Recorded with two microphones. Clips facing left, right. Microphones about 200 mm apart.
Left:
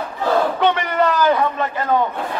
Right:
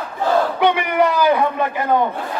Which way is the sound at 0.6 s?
10° right (ahead or behind).